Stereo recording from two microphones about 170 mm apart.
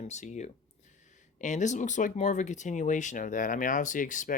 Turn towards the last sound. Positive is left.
turn(degrees=50)  # may be behind; listen again after turning